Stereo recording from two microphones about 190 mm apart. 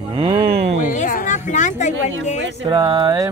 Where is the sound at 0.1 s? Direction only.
30° right (ahead or behind).